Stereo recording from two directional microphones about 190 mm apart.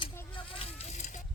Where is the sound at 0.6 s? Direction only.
35° left (ahead or behind).